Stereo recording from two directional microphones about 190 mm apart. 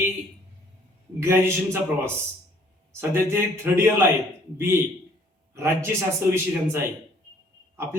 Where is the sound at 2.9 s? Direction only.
15° right (ahead or behind).